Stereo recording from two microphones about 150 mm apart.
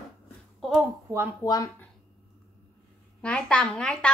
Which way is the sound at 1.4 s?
25° left (ahead or behind).